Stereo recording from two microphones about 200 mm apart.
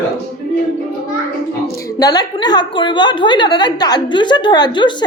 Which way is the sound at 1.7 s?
20° left (ahead or behind).